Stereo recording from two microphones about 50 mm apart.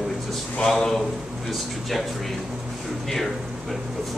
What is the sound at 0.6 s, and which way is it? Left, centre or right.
Speech, centre.